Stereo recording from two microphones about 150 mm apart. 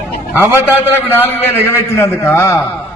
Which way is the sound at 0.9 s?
15° left (ahead or behind).